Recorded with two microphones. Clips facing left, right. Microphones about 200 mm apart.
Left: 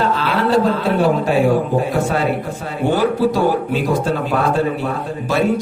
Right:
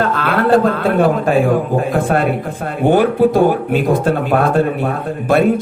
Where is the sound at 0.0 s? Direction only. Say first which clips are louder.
Right 2 dB; 55° right (ahead or behind).